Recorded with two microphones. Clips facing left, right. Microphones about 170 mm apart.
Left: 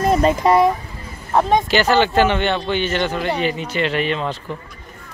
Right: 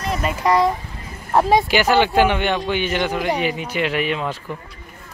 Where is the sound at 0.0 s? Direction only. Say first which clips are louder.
Left 8 dB; 40° left (ahead or behind).